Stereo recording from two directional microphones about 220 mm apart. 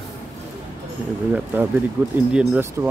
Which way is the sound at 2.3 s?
5° right (ahead or behind).